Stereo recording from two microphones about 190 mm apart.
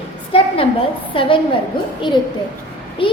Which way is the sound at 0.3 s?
30° left (ahead or behind).